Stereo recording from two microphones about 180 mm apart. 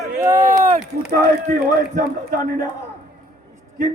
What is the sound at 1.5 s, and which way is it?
Speech, 50° right (ahead or behind).